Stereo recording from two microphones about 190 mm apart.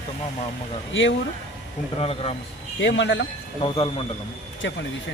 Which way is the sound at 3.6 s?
30° left (ahead or behind).